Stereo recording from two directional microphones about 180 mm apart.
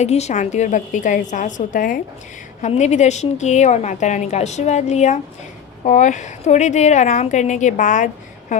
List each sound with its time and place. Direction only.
0.0 s a woman's voice: 40° left (ahead or behind)